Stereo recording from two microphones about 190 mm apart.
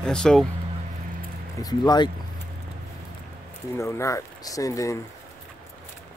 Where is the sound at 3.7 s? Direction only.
15° left (ahead or behind).